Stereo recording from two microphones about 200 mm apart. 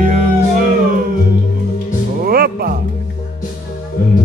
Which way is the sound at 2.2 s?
50° right (ahead or behind).